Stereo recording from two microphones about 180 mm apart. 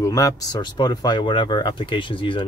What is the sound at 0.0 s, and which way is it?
Speech, 20° left (ahead or behind).